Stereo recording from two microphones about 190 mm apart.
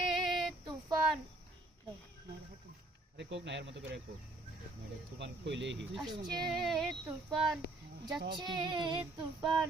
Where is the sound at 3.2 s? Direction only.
70° right (ahead or behind).